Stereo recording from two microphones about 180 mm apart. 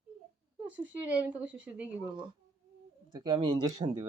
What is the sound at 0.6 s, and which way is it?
Speech, 10° right (ahead or behind).